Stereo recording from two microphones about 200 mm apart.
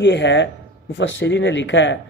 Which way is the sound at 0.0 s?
60° left (ahead or behind).